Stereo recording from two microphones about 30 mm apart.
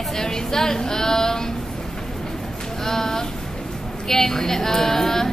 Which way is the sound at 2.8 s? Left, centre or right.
Centre.